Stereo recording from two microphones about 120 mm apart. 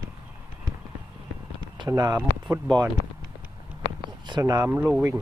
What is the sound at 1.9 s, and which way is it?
Speech, 30° right (ahead or behind).